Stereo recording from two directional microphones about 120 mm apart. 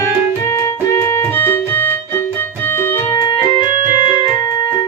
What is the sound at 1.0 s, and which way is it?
Music, 20° left (ahead or behind).